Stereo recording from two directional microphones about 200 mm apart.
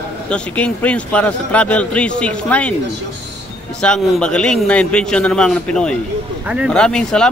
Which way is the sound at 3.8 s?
5° left (ahead or behind).